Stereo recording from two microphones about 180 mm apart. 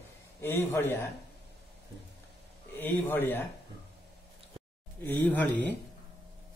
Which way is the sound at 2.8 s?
10° left (ahead or behind).